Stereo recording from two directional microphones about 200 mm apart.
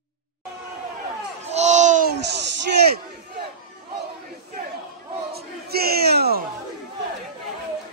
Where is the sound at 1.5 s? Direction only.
35° right (ahead or behind).